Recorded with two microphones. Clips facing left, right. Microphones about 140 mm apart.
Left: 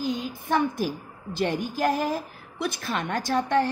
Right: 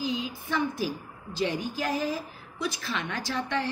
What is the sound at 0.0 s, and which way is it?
A woman's voice, 50° left (ahead or behind).